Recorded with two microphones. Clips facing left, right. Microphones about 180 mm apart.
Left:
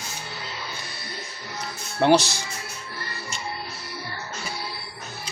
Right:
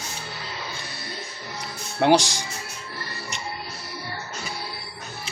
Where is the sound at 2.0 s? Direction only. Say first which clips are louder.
Even; 15° right (ahead or behind).